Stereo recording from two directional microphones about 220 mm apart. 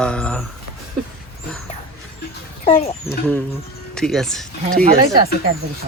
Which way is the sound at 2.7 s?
25° left (ahead or behind).